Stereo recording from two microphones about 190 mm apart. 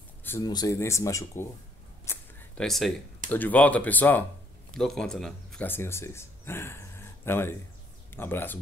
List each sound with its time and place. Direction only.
0.2 s speech: 15° left (ahead or behind)
2.0 s a sound: 5° left (ahead or behind)
3.3 s speech: 10° left (ahead or behind)